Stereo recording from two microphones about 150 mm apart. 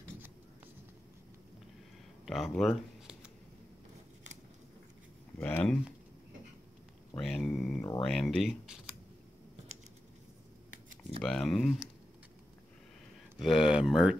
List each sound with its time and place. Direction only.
2.2 s speech: centre (ahead or behind)
5.4 s a sound: 10° left (ahead or behind)
7.2 s a sound: 5° left (ahead or behind)
8.0 s speech: 5° left (ahead or behind)
11.2 s speech: 5° left (ahead or behind)
13.4 s speech: centre (ahead or behind)